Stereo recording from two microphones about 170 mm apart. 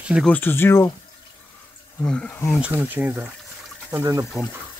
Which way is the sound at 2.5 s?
10° right (ahead or behind).